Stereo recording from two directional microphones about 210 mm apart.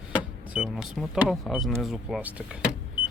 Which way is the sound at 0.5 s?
5° right (ahead or behind).